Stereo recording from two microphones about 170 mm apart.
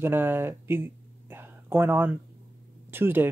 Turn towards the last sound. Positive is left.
turn(degrees=-10)  # may be behind; listen again after turning